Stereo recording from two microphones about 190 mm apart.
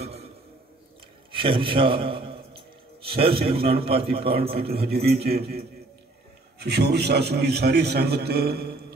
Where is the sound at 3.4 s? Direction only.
55° right (ahead or behind).